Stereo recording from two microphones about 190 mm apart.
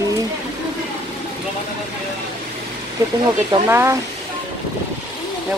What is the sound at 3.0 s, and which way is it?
Speech, 15° right (ahead or behind).